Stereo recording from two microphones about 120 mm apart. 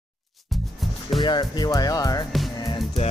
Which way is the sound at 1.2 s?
40° left (ahead or behind).